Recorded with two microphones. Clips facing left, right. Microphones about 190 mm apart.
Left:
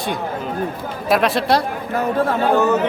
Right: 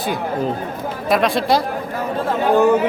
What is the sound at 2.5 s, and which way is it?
Speech, 15° right (ahead or behind).